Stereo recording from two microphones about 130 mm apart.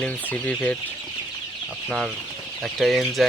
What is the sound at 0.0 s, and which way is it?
Speech, 10° left (ahead or behind).